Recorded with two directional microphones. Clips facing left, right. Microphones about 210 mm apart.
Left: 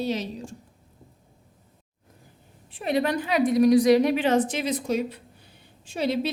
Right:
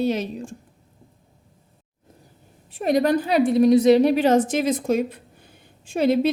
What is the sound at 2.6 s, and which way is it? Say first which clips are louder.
A woman's voice: right 5 dB; 40° right (ahead or behind).